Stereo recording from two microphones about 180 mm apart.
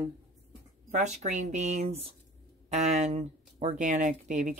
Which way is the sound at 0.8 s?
40° right (ahead or behind).